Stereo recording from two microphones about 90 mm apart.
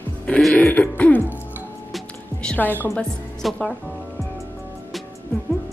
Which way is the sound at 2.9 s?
5° left (ahead or behind).